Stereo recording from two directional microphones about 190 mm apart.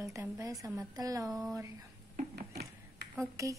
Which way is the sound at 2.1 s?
55° right (ahead or behind).